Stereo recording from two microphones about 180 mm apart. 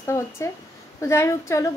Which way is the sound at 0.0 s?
15° left (ahead or behind).